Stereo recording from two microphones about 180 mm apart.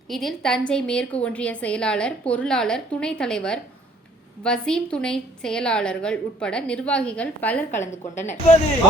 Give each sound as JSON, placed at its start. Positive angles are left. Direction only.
{"t": 0.1, "sound": "a woman's voice", "side_deg": 0}
{"t": 7.7, "sound": "a woman's voice", "side_deg": 40}